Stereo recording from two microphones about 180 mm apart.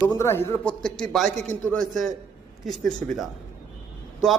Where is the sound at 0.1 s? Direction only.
15° left (ahead or behind).